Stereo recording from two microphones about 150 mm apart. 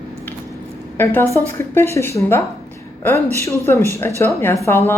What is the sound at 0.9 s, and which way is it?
Speech, 15° left (ahead or behind).